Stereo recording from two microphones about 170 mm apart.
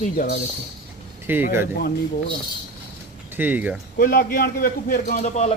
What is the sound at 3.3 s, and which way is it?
Speech, 10° right (ahead or behind).